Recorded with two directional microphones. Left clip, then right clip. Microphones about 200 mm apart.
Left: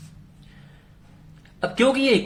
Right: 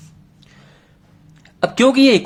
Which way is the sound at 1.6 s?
40° right (ahead or behind).